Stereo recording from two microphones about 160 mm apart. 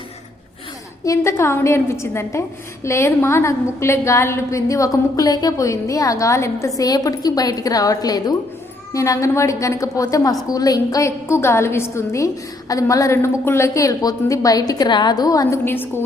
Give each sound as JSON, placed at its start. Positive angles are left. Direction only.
{"t": 1.0, "sound": "a woman's voice", "side_deg": 20}